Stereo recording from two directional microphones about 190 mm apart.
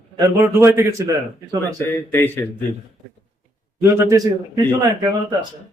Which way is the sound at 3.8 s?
15° right (ahead or behind).